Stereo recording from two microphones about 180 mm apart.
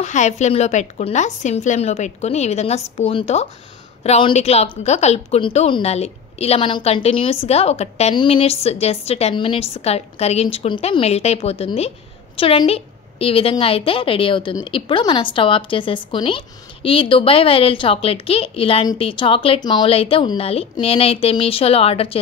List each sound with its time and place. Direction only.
0.0 s a woman's voice: 40° left (ahead or behind)